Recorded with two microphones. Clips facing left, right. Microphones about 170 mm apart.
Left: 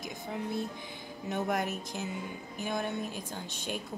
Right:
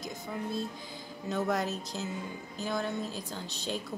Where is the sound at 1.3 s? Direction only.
20° left (ahead or behind).